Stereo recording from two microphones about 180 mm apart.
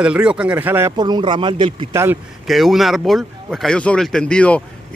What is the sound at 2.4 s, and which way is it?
Speech, centre (ahead or behind).